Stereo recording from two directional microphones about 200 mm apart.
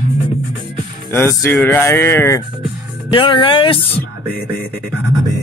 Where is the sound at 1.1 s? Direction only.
15° left (ahead or behind).